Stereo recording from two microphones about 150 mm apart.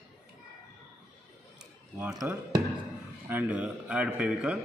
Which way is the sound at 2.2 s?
15° right (ahead or behind).